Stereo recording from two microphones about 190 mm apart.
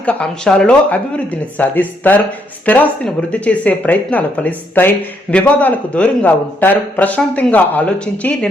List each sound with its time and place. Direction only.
0.0 s speech: 5° left (ahead or behind)